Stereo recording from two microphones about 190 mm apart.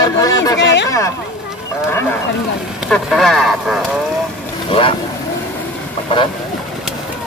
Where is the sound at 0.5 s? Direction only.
70° left (ahead or behind).